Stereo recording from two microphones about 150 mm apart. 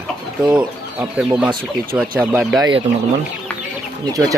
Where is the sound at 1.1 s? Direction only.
5° right (ahead or behind).